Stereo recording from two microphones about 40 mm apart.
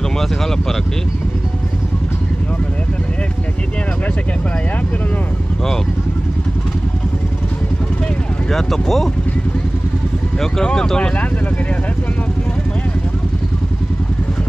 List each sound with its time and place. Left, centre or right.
8.5 s speech: centre
10.4 s speech: centre